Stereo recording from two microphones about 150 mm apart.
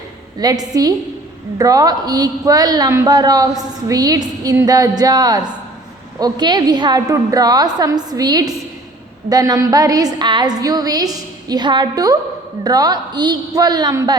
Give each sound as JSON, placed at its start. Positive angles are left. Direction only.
{"t": 0.3, "sound": "a woman's voice", "side_deg": -25}